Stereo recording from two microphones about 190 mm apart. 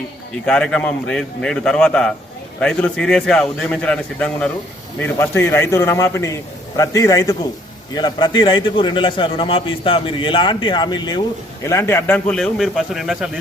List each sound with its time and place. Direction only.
0.4 s a man's voice: 5° left (ahead or behind)